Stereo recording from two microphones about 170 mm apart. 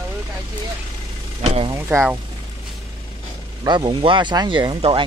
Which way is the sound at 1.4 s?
35° right (ahead or behind).